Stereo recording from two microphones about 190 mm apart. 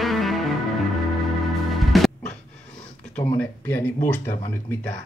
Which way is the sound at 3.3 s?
10° left (ahead or behind).